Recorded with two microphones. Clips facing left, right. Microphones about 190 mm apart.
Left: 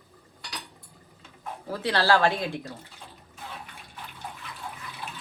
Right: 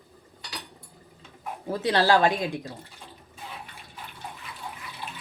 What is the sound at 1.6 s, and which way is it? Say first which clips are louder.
Speech: right 2 dB; 20° right (ahead or behind).